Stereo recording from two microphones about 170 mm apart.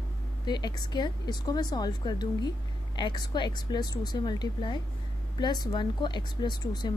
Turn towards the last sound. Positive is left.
turn(degrees=25)  # may be behind; listen again after turning